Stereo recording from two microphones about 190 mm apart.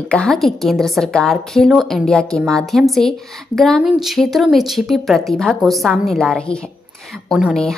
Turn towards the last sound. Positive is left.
turn(degrees=0)  # may be behind; listen again after turning